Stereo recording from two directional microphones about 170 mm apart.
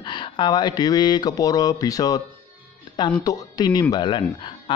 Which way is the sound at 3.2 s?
25° left (ahead or behind).